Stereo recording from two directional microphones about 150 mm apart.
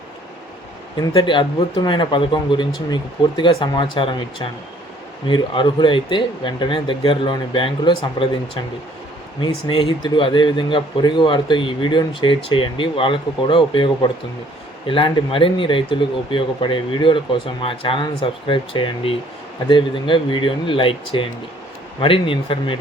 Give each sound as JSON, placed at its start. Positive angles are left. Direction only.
{"t": 0.9, "sound": "speech", "side_deg": 30}
{"t": 9.4, "sound": "speech", "side_deg": 35}